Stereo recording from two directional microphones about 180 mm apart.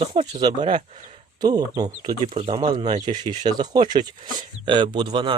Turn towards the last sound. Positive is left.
turn(degrees=-25)  # may be behind; listen again after turning